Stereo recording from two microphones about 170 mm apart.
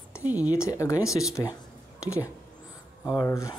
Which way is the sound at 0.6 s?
15° left (ahead or behind).